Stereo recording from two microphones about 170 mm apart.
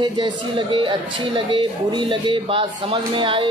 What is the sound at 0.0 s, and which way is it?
Speech, 25° right (ahead or behind).